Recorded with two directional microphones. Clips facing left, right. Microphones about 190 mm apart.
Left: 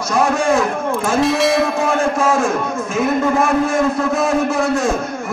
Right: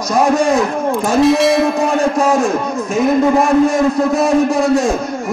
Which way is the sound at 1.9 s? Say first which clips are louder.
Right 3 dB; 15° right (ahead or behind).